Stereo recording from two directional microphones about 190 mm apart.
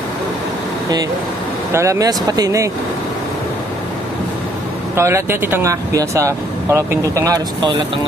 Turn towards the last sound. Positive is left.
turn(degrees=-20)  # may be behind; listen again after turning